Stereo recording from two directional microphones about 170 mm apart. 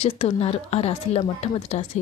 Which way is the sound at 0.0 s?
35° left (ahead or behind).